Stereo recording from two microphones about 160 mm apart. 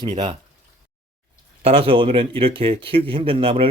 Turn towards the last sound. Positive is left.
turn(degrees=-35)  # may be behind; listen again after turning